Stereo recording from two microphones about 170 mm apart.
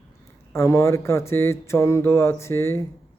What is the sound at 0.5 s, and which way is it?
Speech, 15° left (ahead or behind).